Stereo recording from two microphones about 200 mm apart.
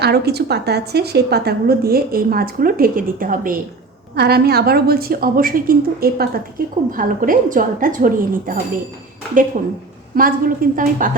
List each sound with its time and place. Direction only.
0.0 s a woman's voice: 55° right (ahead or behind)
10.2 s a woman's voice: 45° right (ahead or behind)